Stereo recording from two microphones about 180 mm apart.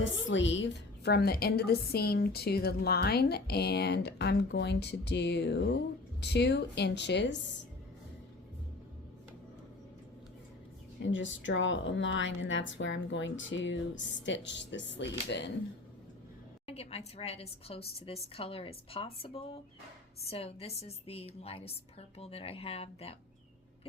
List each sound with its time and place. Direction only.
0.3 s a woman's voice: 90° left; by 7.3 s 75° left (ahead or behind)
11.0 s a woman's voice: 90° left
16.6 s a woman's voice: 35° left (ahead or behind)